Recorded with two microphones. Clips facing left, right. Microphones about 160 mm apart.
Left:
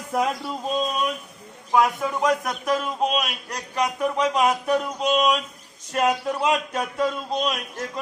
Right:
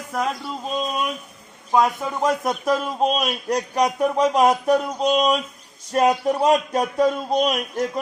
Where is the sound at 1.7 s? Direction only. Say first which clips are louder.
Right 1 dB; 25° right (ahead or behind).